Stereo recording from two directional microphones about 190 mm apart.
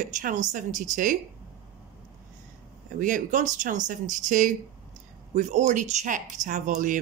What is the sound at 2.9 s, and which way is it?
Speech, 45° right (ahead or behind).